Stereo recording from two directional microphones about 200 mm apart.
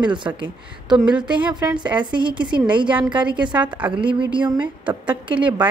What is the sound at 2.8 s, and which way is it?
Speech, 5° right (ahead or behind).